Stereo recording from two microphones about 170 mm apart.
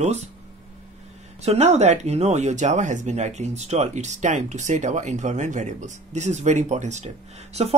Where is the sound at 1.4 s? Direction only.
40° right (ahead or behind).